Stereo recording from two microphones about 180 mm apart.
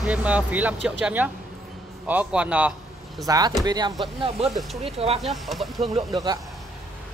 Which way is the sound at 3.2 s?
20° right (ahead or behind).